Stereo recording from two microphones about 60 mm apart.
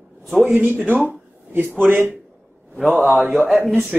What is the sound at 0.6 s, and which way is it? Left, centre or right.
Speech, right.